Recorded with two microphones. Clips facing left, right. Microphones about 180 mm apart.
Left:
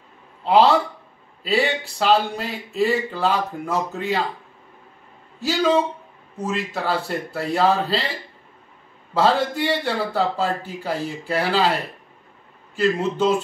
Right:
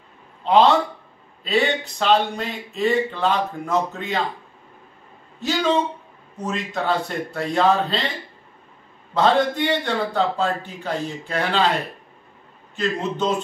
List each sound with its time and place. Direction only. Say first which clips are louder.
0.5 s speech: even; 10° left (ahead or behind)
5.4 s speech: left 2 dB; 5° left (ahead or behind)
9.1 s speech: right 1 dB; 5° left (ahead or behind)
12.7 s speech: left 4 dB; 10° left (ahead or behind)